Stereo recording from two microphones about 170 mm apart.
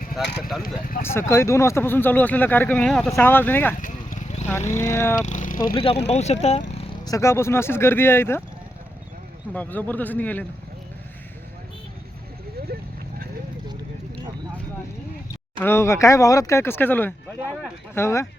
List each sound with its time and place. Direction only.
1.0 s speech: 15° left (ahead or behind)
3.2 s speech: 10° left (ahead or behind)
3.8 s a sound: 50° left (ahead or behind)
4.6 s speech: 45° left (ahead or behind)
4.9 s speech: 15° left (ahead or behind)
5.2 s speech: 45° left (ahead or behind)
5.7 s speech: 35° left (ahead or behind)
6.7 s speech: 25° left (ahead or behind)
9.5 s speech: 10° left (ahead or behind)
15.6 s speech: 15° left (ahead or behind)